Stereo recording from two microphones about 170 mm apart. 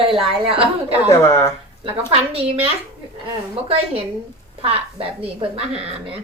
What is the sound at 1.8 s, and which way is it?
A woman's voice, 35° right (ahead or behind).